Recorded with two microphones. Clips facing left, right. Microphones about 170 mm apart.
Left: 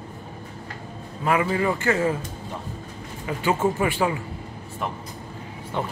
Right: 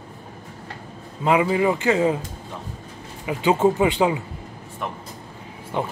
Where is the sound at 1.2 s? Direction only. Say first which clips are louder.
Right 3 dB; 15° right (ahead or behind).